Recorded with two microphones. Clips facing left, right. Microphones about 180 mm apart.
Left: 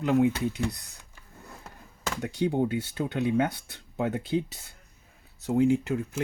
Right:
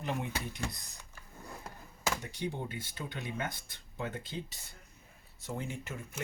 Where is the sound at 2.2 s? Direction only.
60° left (ahead or behind).